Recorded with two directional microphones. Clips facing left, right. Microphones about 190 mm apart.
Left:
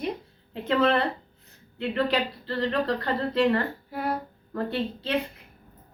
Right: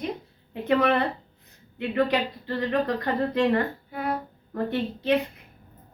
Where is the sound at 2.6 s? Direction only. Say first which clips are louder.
Right 1 dB; 15° right (ahead or behind).